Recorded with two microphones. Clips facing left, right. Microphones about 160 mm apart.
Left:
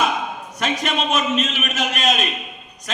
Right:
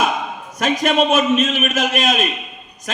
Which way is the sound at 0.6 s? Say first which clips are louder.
Right 6 dB; 45° right (ahead or behind).